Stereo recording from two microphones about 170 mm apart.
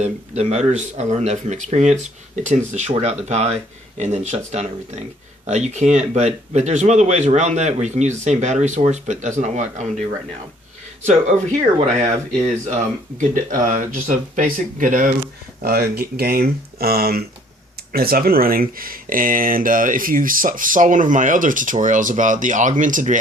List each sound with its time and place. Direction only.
0.0 s speech: 40° right (ahead or behind)
11.0 s speech: 40° right (ahead or behind)
12.4 s speech: 45° right (ahead or behind)
15.6 s speech: 65° right (ahead or behind)